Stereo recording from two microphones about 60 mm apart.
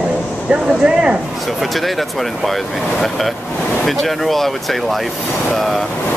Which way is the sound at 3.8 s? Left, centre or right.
Centre.